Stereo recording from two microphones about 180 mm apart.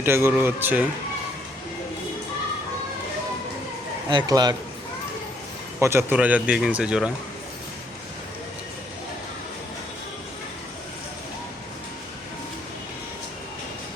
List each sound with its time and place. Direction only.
0.0 s speech: 15° right (ahead or behind)
4.1 s a man's voice: 20° right (ahead or behind)
5.8 s speech: 15° right (ahead or behind)